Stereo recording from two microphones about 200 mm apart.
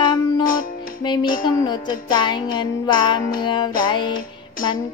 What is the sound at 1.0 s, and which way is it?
Music, 20° left (ahead or behind).